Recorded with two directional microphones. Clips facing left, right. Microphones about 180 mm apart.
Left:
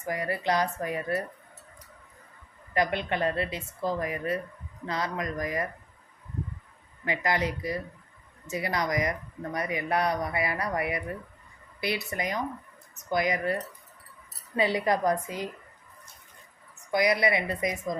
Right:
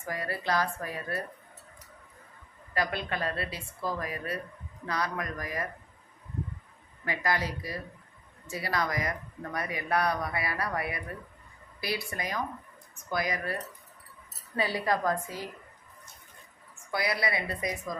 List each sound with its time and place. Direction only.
0.0 s speech: 20° left (ahead or behind)
2.7 s speech: 20° left (ahead or behind)
7.0 s speech: 20° left (ahead or behind)
16.9 s speech: 20° left (ahead or behind)